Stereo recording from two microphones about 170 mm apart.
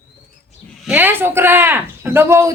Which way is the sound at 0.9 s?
10° right (ahead or behind).